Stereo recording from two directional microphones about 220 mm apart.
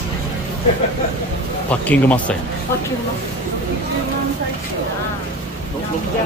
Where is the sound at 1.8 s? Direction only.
5° left (ahead or behind).